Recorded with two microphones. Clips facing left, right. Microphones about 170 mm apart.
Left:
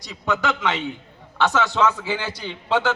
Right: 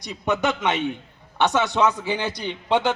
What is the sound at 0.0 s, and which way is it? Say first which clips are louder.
A man's voice: right 1 dB; 20° right (ahead or behind).